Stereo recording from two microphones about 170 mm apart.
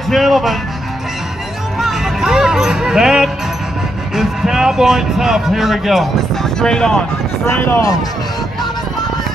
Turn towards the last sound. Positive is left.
turn(degrees=15)  # may be behind; listen again after turning